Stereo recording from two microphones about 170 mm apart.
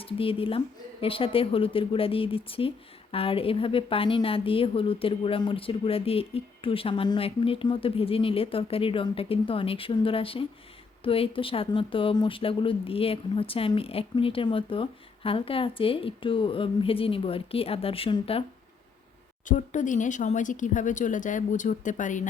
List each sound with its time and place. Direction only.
0.0 s speech: 35° left (ahead or behind)
19.5 s speech: 50° left (ahead or behind)